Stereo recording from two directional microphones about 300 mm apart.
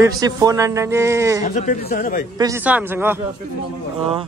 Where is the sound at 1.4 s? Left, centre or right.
Left.